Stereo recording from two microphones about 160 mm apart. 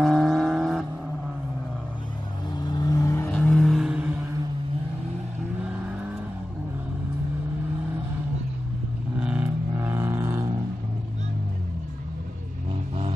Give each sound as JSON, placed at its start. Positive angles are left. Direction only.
{"t": 0.0, "sound": "vehicle", "side_deg": 0}
{"t": 2.6, "sound": "vehicle", "side_deg": 25}
{"t": 3.3, "sound": "vehicle", "side_deg": 5}
{"t": 9.2, "sound": "a sound", "side_deg": -5}